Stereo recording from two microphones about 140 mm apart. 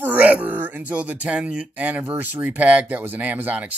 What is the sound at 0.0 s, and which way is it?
Speech, 10° right (ahead or behind).